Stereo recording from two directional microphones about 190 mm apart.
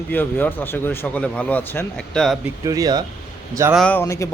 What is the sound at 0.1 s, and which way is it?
A man's voice, 10° left (ahead or behind).